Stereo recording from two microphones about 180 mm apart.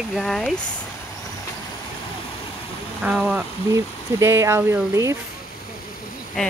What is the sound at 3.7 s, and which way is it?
Speech, 15° right (ahead or behind).